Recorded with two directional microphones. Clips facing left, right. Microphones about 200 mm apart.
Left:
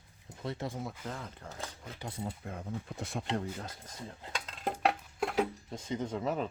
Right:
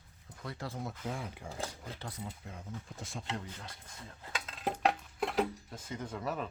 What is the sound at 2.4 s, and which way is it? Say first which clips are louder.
Speech: left 6 dB; 60° left (ahead or behind).